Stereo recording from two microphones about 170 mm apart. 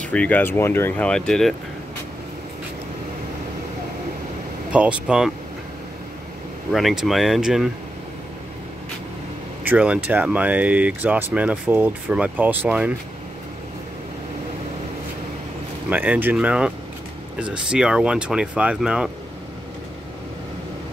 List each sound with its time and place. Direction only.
0.1 s speech: 10° left (ahead or behind)
4.6 s speech: 5° right (ahead or behind)
6.7 s speech: centre (ahead or behind)
9.7 s speech: 10° right (ahead or behind)
15.9 s speech: 10° right (ahead or behind)